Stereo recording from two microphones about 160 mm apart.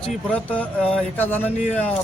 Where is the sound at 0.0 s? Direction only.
5° left (ahead or behind).